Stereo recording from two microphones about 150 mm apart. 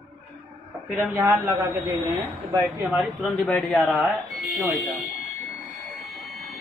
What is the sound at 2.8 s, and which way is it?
Speech, centre (ahead or behind).